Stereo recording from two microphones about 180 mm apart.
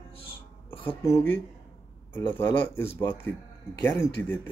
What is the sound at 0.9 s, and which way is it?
Speech, 15° left (ahead or behind).